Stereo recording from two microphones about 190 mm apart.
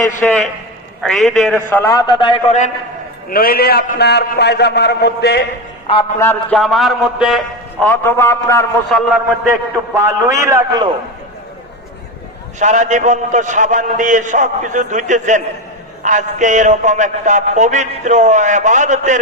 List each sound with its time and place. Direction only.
0.2 s a man's voice: 5° left (ahead or behind)
1.7 s a man's voice: 15° left (ahead or behind)
3.2 s a man's voice: 50° left (ahead or behind)
5.9 s a man's voice: 30° left (ahead or behind)
6.5 s a man's voice: centre (ahead or behind)
7.9 s a man's voice: 10° left (ahead or behind)
8.9 s a man's voice: centre (ahead or behind)
9.5 s a man's voice: 15° right (ahead or behind)
12.5 s a man's voice: 40° right (ahead or behind)